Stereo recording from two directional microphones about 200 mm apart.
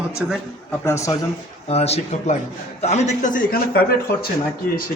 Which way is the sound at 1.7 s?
30° left (ahead or behind).